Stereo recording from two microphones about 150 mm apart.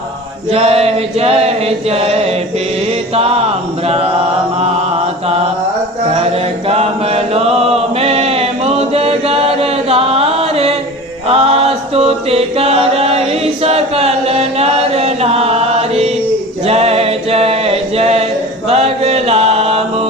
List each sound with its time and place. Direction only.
0.5 s chant: 45° right (ahead or behind)
3.2 s mantra: 45° right (ahead or behind)
6.7 s chant: 45° right (ahead or behind)
11.3 s mantra: 40° right (ahead or behind)
18.7 s chant: 45° right (ahead or behind)